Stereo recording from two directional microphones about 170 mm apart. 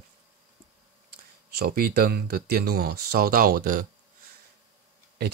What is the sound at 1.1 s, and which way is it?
Speech, 65° right (ahead or behind).